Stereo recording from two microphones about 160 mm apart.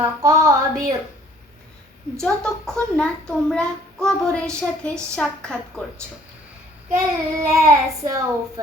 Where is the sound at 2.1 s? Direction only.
5° left (ahead or behind).